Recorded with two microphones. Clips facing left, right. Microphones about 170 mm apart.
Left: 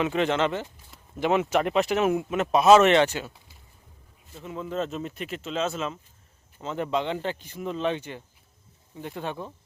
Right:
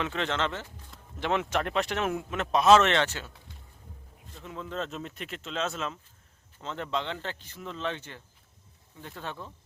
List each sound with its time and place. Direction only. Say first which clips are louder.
0.0 s speech: left 6 dB; 15° left (ahead or behind)